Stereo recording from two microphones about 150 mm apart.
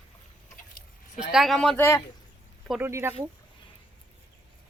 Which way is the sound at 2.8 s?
15° right (ahead or behind).